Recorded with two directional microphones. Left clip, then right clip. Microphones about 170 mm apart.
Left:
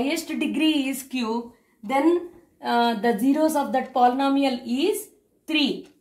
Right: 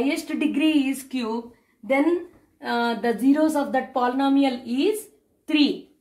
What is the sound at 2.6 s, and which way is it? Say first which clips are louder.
A woman's voice: left 3 dB; 20° left (ahead or behind).